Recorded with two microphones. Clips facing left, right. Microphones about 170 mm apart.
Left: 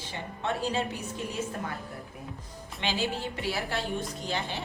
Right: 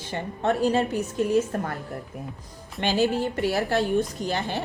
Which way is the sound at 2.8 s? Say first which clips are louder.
Right 8 dB; 45° right (ahead or behind).